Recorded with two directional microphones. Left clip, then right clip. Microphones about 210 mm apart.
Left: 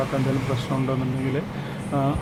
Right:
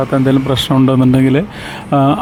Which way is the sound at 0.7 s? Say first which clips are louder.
Right 15 dB; 45° right (ahead or behind).